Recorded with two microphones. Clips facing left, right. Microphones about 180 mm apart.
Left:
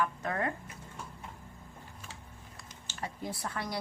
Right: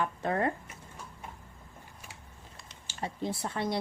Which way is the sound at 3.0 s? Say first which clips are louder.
Right 4 dB; 25° right (ahead or behind).